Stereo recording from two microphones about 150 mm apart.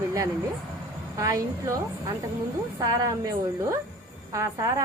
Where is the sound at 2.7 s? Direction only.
25° right (ahead or behind).